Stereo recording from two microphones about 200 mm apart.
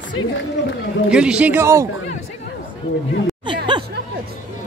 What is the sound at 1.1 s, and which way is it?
Speech, 5° right (ahead or behind).